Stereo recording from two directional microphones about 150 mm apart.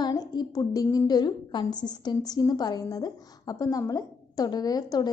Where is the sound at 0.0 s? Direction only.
25° left (ahead or behind).